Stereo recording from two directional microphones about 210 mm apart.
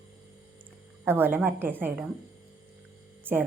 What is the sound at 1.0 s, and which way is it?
A woman's voice, 10° right (ahead or behind).